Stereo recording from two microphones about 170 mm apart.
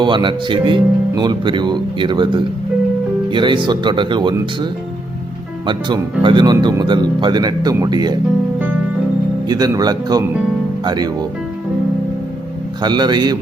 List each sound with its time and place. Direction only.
0.0 s speech: 30° right (ahead or behind)
9.5 s speech: 25° right (ahead or behind)
12.8 s speech: 25° right (ahead or behind)